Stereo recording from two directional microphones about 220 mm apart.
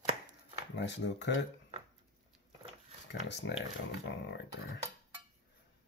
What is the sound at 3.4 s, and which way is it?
Speech, 55° left (ahead or behind).